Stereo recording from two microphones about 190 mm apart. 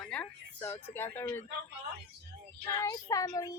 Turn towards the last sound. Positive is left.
turn(degrees=20)  # may be behind; listen again after turning